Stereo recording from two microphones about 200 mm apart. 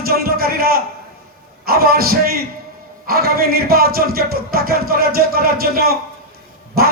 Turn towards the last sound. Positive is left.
turn(degrees=-50)  # may be behind; listen again after turning